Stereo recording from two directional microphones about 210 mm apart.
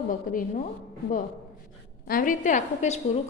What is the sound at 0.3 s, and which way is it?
Speech, 40° left (ahead or behind).